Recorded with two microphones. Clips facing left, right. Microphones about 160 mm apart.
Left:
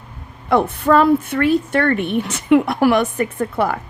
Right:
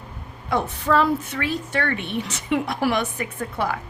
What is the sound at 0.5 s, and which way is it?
A woman's voice, 55° left (ahead or behind).